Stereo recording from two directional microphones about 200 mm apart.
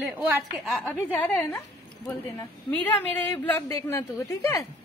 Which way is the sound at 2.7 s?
10° left (ahead or behind).